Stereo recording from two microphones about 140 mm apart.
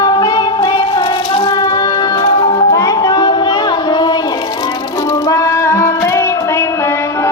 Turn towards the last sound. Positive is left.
turn(degrees=20)  # may be behind; listen again after turning